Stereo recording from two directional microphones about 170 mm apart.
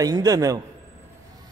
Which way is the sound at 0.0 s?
20° right (ahead or behind).